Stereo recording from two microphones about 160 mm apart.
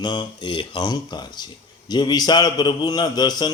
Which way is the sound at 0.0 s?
25° left (ahead or behind).